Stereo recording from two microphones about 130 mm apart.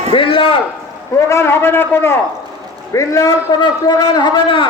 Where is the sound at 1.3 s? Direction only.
20° left (ahead or behind); by 4.7 s 40° left (ahead or behind).